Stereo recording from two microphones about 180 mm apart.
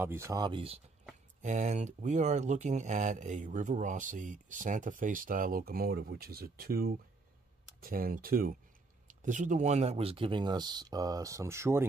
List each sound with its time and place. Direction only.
0.0 s speech: 15° right (ahead or behind)
1.4 s speech: 40° right (ahead or behind); by 11.8 s 15° right (ahead or behind)